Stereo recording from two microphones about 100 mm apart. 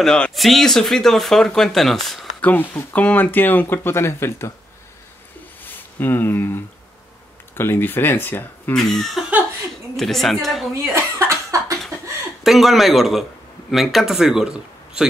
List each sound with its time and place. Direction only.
0.0 s speech: 5° left (ahead or behind)
2.4 s speech: 15° left (ahead or behind)
5.6 s speech: 20° left (ahead or behind)
8.7 s speech: 5° left (ahead or behind)
10.9 s cough: 25° right (ahead or behind)
12.4 s speech: centre (ahead or behind)